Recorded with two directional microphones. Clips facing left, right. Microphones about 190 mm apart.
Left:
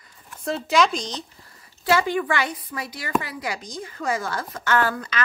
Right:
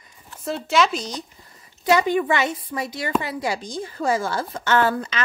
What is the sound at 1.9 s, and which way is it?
A woman's voice, 20° right (ahead or behind).